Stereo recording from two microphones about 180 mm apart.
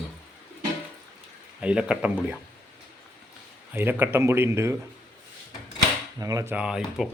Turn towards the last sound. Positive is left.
turn(degrees=-5)  # may be behind; listen again after turning